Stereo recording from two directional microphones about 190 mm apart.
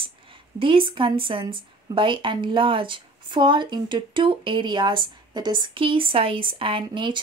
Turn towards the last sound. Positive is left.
turn(degrees=-25)  # may be behind; listen again after turning